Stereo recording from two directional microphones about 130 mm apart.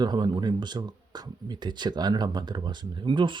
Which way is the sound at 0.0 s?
35° right (ahead or behind).